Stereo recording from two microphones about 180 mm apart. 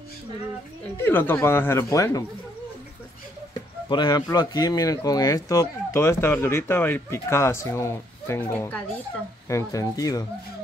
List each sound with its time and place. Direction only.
0.8 s speech: 10° left (ahead or behind)
3.9 s speech: 25° left (ahead or behind)